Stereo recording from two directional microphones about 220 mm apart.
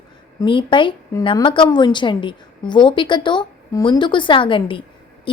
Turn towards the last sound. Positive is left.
turn(degrees=20)  # may be behind; listen again after turning